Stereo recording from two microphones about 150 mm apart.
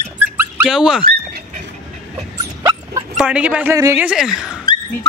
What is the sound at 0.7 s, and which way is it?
Speech, 5° right (ahead or behind).